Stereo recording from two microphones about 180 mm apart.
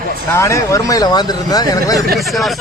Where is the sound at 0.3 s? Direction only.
15° left (ahead or behind).